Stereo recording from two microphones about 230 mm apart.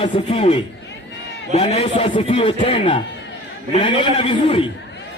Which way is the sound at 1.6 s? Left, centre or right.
Left.